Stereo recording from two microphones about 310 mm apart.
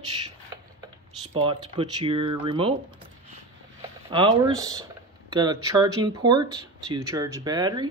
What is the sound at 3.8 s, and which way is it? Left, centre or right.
Speech, centre.